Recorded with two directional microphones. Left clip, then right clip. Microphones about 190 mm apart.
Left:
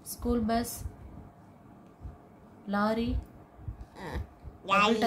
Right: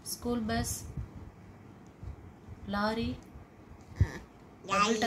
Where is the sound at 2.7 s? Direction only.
20° left (ahead or behind).